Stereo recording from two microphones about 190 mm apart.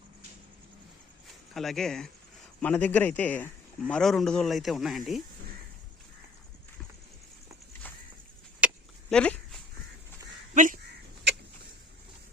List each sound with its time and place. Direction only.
1.5 s a man's voice: centre (ahead or behind)
8.6 s a sound: 5° right (ahead or behind)
9.0 s dog: 5° left (ahead or behind)
10.5 s speech: 40° right (ahead or behind)